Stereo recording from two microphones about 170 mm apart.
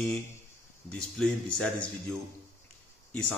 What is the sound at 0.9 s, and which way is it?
Speech, 5° left (ahead or behind).